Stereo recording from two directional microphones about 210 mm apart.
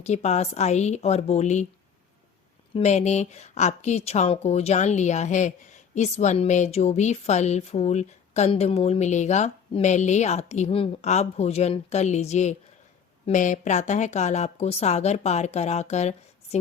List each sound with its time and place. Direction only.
0.0 s speech: 30° left (ahead or behind)
2.7 s speech: 35° left (ahead or behind)